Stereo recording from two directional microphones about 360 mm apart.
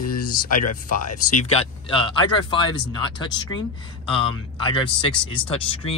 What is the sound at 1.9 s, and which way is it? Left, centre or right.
Speech, centre.